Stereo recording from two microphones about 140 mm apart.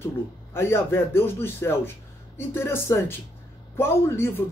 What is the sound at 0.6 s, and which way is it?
Speech, 15° left (ahead or behind).